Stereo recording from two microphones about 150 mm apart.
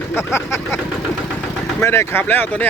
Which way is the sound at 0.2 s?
20° left (ahead or behind).